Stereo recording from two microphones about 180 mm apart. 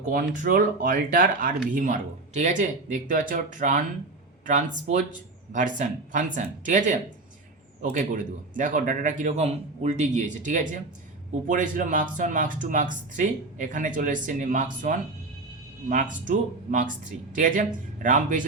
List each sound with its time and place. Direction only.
0.0 s speech: 45° right (ahead or behind)
4.9 s speech: 45° right (ahead or behind)